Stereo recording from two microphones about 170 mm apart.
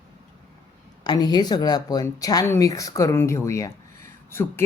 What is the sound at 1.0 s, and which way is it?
A man's voice, 25° left (ahead or behind).